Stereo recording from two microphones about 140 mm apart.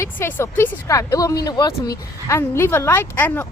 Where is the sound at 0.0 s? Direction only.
15° left (ahead or behind).